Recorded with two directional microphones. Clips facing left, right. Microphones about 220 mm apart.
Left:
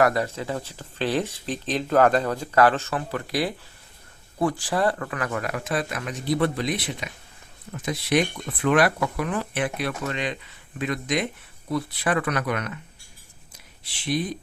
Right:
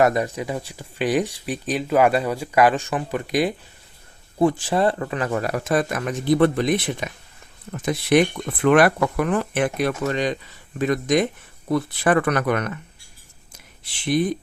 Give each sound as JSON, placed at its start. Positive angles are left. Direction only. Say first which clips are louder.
{"t": 0.0, "sound": "speech", "louder": "right 3 dB", "side_deg": -20}
{"t": 13.8, "sound": "speech", "louder": "right 6 dB", "side_deg": -55}